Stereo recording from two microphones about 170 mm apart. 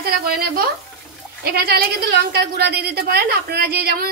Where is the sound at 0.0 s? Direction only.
65° right (ahead or behind).